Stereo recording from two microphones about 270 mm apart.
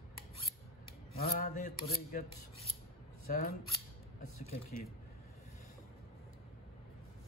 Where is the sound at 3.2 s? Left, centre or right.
Left.